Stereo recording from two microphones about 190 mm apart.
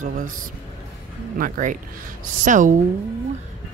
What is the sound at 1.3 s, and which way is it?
Speech, 45° right (ahead or behind).